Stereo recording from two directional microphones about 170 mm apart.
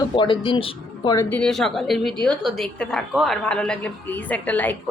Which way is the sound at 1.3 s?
5° left (ahead or behind).